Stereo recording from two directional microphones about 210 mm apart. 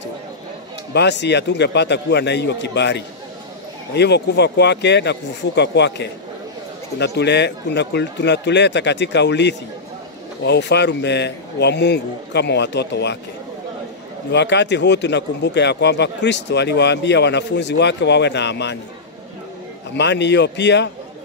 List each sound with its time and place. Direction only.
0.9 s speech: 55° left (ahead or behind)
14.3 s speech: 55° left (ahead or behind)
19.9 s speech: 55° left (ahead or behind)